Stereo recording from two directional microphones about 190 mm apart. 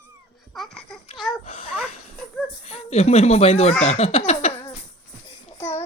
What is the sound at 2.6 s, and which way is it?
Speech, 35° left (ahead or behind).